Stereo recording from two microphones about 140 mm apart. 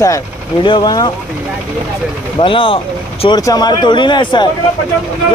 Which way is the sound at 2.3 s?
35° left (ahead or behind).